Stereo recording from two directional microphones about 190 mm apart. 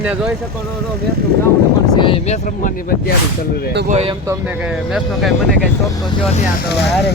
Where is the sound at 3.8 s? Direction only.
35° right (ahead or behind).